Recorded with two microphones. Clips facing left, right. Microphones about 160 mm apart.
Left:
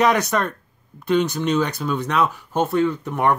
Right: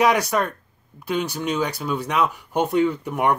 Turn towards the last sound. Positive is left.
turn(degrees=-10)  # may be behind; listen again after turning